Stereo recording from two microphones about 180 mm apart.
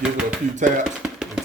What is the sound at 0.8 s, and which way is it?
Music, 5° right (ahead or behind).